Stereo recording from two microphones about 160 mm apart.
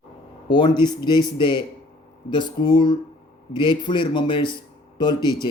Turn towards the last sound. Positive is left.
turn(degrees=25)  # may be behind; listen again after turning